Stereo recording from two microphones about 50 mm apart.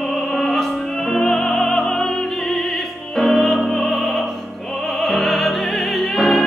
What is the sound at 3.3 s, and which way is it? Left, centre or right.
Music, centre.